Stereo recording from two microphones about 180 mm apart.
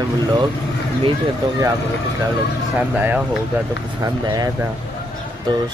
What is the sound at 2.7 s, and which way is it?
Speech, 5° right (ahead or behind).